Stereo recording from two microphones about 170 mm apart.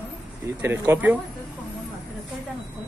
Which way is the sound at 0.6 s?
10° right (ahead or behind).